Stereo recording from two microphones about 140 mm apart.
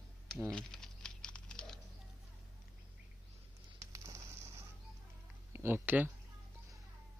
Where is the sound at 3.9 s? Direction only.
20° right (ahead or behind).